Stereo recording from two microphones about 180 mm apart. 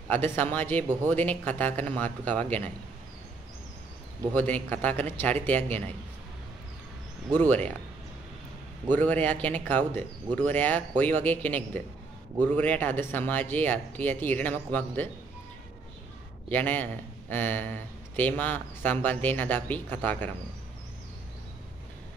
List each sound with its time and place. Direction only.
0.1 s a man's voice: 10° left (ahead or behind)
4.3 s a man's voice: 10° left (ahead or behind)
7.3 s a man's voice: 10° left (ahead or behind)
8.8 s a man's voice: 10° left (ahead or behind)
16.4 s a man's voice: 10° left (ahead or behind)